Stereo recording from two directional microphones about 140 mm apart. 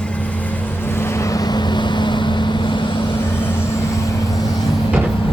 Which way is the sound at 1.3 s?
30° left (ahead or behind).